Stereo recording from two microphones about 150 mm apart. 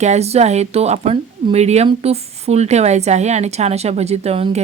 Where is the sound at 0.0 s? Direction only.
45° right (ahead or behind).